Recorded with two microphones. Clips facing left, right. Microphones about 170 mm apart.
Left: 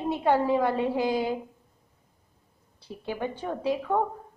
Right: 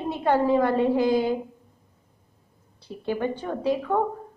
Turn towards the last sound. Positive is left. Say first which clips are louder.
# right 2 dB
turn(degrees=5)  # may be behind; listen again after turning